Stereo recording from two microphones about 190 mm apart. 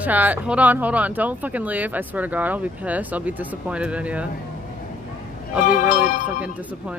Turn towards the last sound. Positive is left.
turn(degrees=45)  # may be behind; listen again after turning